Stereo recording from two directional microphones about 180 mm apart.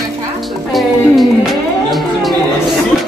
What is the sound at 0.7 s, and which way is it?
Music, centre (ahead or behind).